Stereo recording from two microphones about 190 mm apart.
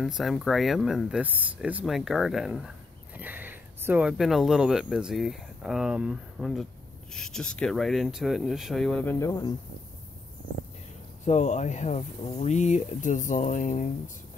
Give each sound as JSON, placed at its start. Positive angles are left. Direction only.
{"t": 0.0, "sound": "speech", "side_deg": 0}
{"t": 11.2, "sound": "speech", "side_deg": 35}